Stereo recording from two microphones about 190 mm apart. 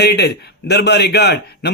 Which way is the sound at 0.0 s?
60° left (ahead or behind).